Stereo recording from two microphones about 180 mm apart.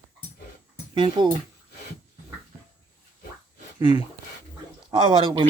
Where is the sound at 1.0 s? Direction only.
25° right (ahead or behind).